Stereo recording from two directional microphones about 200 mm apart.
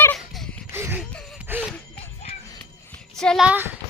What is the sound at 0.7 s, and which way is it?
Gasp, 10° right (ahead or behind).